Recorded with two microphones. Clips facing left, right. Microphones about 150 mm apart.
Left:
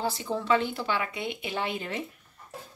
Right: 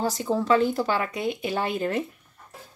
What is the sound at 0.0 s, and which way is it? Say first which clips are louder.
Speech: right 5 dB; 40° right (ahead or behind).